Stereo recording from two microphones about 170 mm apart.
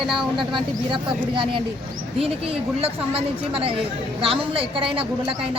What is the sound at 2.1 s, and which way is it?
A woman's voice, 35° right (ahead or behind).